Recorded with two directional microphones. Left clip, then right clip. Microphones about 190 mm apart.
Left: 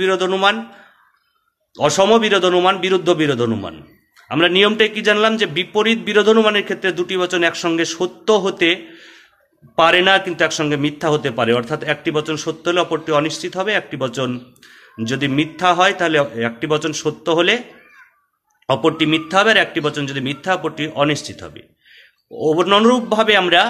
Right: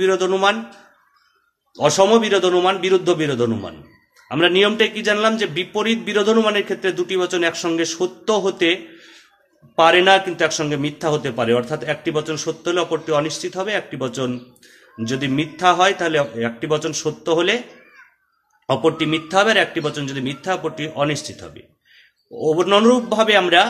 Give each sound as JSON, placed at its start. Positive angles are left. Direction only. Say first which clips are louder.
{"t": 0.0, "sound": "a man's voice", "louder": "left 1 dB", "side_deg": 10}
{"t": 1.8, "sound": "a man's voice", "louder": "left 1 dB", "side_deg": 15}
{"t": 18.7, "sound": "a man's voice", "louder": "left 2 dB", "side_deg": 15}